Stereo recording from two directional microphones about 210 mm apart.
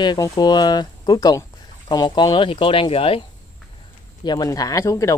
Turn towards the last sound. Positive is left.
turn(degrees=15)  # may be behind; listen again after turning